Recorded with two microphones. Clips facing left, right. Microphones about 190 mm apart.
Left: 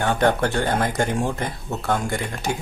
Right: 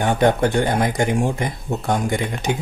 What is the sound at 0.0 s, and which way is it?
Speech, 15° right (ahead or behind).